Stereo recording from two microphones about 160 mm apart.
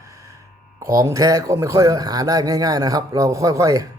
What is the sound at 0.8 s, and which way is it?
A man's voice, 20° right (ahead or behind).